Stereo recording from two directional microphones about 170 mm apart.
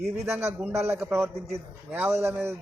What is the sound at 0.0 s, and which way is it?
A man's voice, 15° right (ahead or behind).